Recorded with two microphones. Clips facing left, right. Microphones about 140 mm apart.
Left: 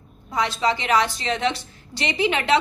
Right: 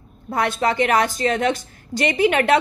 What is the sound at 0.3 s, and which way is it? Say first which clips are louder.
A woman's voice: right 2 dB; 55° right (ahead or behind).